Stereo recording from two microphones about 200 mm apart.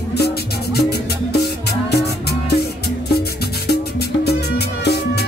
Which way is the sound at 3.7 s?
55° left (ahead or behind).